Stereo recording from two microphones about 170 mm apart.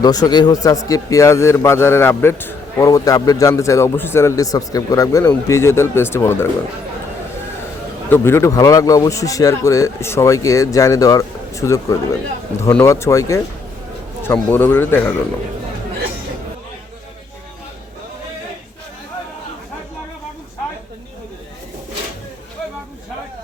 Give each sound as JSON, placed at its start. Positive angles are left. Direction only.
{"t": 0.0, "sound": "a man's voice", "side_deg": 25}
{"t": 8.1, "sound": "a man's voice", "side_deg": 15}